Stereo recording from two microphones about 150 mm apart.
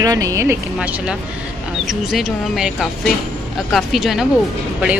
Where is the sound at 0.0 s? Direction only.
25° right (ahead or behind).